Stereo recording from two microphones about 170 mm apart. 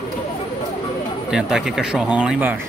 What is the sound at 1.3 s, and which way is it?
Speech, 5° right (ahead or behind).